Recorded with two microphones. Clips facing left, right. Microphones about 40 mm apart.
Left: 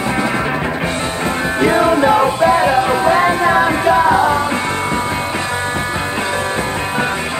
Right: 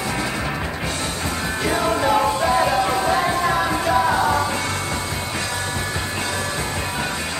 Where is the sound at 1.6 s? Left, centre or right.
Left.